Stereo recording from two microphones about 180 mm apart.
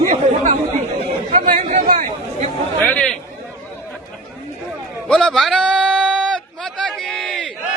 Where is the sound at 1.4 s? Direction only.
40° right (ahead or behind).